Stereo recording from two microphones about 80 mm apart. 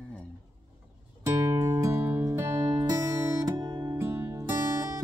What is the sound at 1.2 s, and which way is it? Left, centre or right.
Music, right.